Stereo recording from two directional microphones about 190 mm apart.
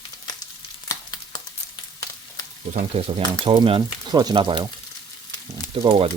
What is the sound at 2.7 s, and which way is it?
Speech, 30° right (ahead or behind).